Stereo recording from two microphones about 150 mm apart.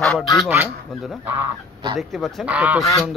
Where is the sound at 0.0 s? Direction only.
5° left (ahead or behind).